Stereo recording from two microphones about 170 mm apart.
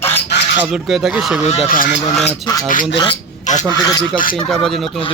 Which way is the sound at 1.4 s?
50° left (ahead or behind).